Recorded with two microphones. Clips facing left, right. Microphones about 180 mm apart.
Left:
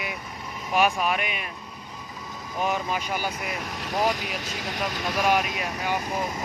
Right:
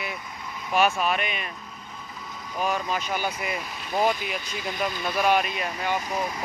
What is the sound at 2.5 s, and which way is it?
Speech, 20° left (ahead or behind).